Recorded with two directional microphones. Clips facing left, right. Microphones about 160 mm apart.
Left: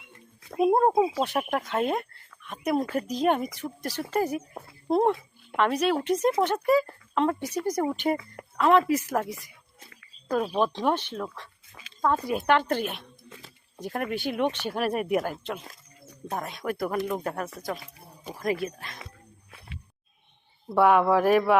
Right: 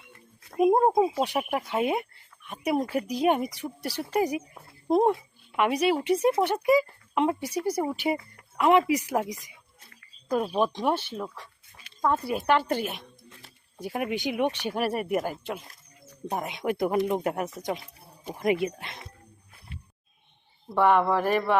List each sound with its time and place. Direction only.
0.6 s speech: 10° right (ahead or behind)
10.5 s speech: 10° right (ahead or behind)
19.5 s a sound: 90° left
20.7 s speech: 5° left (ahead or behind)